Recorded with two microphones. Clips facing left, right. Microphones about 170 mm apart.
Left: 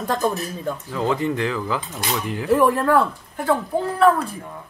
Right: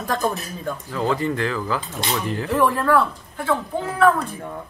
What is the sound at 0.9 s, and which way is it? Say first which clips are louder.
Speech: even; 15° left (ahead or behind).